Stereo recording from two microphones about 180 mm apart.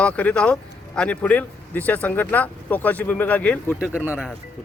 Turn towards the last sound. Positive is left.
turn(degrees=-5)  # may be behind; listen again after turning